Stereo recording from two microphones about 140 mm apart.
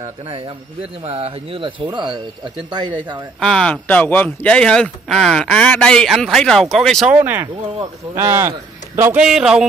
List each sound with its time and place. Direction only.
1.0 s speech: 45° right (ahead or behind)
3.3 s speech: 5° left (ahead or behind)
7.1 s a man's voice: 10° right (ahead or behind)
9.2 s speech: 5° right (ahead or behind)